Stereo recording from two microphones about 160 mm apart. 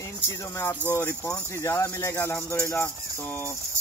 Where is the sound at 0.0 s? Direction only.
20° left (ahead or behind).